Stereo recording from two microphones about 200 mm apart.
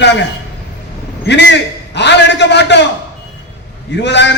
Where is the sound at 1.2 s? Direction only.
60° left (ahead or behind).